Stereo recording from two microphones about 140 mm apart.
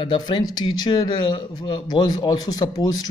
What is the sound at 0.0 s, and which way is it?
Speech, 35° left (ahead or behind).